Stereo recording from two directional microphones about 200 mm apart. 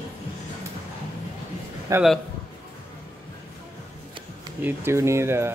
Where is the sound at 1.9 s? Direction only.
15° right (ahead or behind).